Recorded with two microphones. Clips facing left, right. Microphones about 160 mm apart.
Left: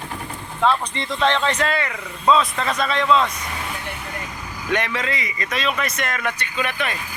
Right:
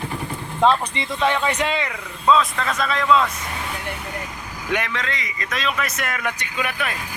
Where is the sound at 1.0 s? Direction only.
10° right (ahead or behind).